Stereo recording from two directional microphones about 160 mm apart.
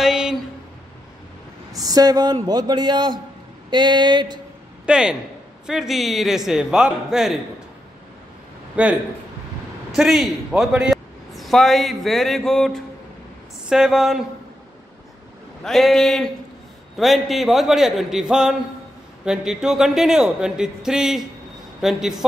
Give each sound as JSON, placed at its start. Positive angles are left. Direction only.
{"t": 0.0, "sound": "a sound", "side_deg": -5}
{"t": 1.7, "sound": "a man's voice", "side_deg": -25}
{"t": 4.8, "sound": "a man's voice", "side_deg": -5}
{"t": 8.8, "sound": "a man's voice", "side_deg": -10}
{"t": 9.9, "sound": "a man's voice", "side_deg": 0}
{"t": 15.6, "sound": "speech", "side_deg": 0}